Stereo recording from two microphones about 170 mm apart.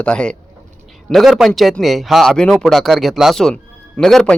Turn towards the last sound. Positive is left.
turn(degrees=0)  # may be behind; listen again after turning